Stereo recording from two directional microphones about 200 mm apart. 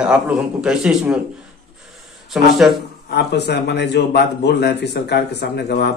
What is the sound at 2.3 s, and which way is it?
Speech, centre (ahead or behind).